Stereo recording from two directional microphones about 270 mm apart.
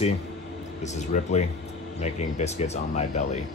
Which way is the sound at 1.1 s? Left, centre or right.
Left.